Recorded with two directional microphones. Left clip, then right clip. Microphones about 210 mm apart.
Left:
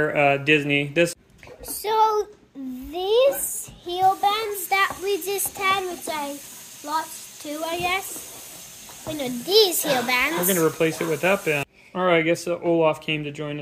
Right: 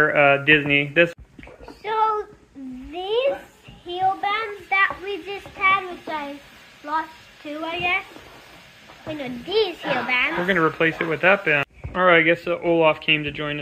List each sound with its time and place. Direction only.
0.0 s speech: 15° left (ahead or behind)
1.8 s a sound: 80° left
2.9 s a sound: 90° left
3.8 s child singing: 90° left; by 6.2 s 75° left (ahead or behind)
7.6 s a child's voice: 80° left
9.2 s a child's voice: 90° left
10.4 s speech: 15° left (ahead or behind)